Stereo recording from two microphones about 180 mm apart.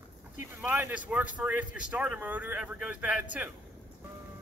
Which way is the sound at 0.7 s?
10° right (ahead or behind).